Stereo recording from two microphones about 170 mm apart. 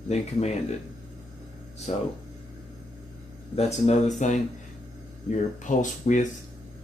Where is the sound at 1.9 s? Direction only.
40° left (ahead or behind).